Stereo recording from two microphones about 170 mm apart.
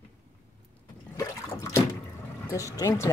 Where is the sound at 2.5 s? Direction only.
20° left (ahead or behind).